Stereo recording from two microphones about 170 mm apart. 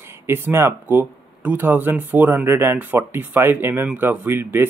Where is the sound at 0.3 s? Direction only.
15° right (ahead or behind).